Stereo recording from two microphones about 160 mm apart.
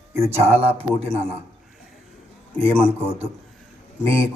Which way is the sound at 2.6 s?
35° right (ahead or behind).